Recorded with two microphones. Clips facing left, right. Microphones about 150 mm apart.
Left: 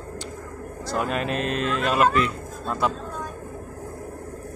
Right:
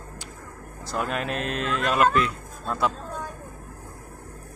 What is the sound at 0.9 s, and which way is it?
A man's voice, centre (ahead or behind).